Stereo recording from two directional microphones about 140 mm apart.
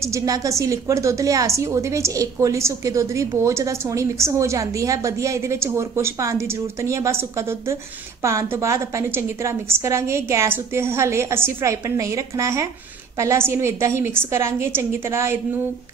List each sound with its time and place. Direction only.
0.0 s a woman's voice: 25° right (ahead or behind)